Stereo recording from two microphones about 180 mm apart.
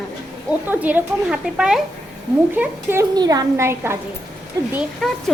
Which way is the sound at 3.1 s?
20° right (ahead or behind).